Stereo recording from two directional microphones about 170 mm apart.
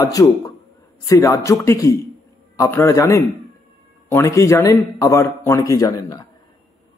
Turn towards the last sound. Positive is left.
turn(degrees=25)  # may be behind; listen again after turning